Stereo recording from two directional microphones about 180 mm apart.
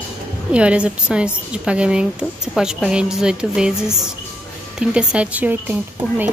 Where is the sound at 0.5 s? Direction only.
5° right (ahead or behind).